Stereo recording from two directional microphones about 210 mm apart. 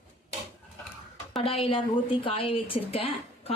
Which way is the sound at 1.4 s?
25° left (ahead or behind).